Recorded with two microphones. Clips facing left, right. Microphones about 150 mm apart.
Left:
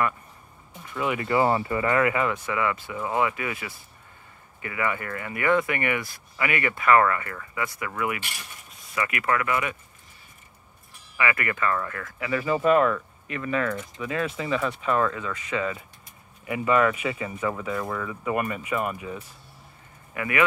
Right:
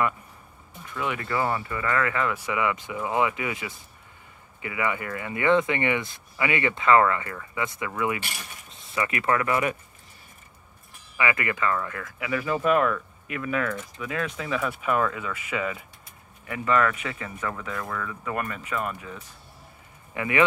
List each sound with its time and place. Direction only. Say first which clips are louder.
0.9 s speech: left 3 dB; 5° left (ahead or behind)
1.3 s speech: left 6 dB; 25° left (ahead or behind)
2.3 s speech: even; 15° right (ahead or behind); by 9.8 s 35° right (ahead or behind)
11.1 s speech: even; 20° right (ahead or behind)
12.3 s speech: left 2 dB; centre (ahead or behind)
16.4 s speech: left 2 dB; 10° left (ahead or behind)
20.2 s speech: right 2 dB; 25° right (ahead or behind)